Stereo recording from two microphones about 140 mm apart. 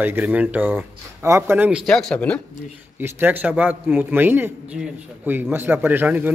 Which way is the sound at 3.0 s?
15° right (ahead or behind).